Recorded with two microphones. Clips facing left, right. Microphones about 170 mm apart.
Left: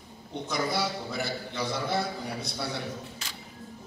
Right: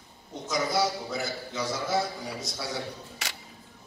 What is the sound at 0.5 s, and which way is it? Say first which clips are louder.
A man's voice: right 3 dB; 60° left (ahead or behind).